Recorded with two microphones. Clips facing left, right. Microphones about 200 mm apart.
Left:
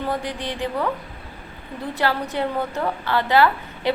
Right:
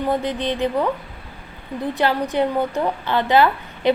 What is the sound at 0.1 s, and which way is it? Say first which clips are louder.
Speech: right 5 dB; 20° right (ahead or behind).